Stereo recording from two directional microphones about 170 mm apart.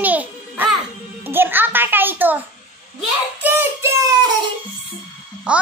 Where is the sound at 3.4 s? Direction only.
10° right (ahead or behind).